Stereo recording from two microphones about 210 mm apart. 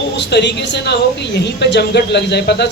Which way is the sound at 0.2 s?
55° left (ahead or behind).